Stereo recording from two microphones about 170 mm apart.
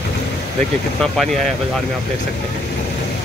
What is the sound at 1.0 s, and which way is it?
Speech, 5° left (ahead or behind).